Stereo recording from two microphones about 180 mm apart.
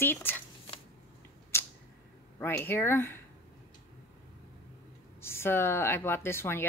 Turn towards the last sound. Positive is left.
turn(degrees=15)  # may be behind; listen again after turning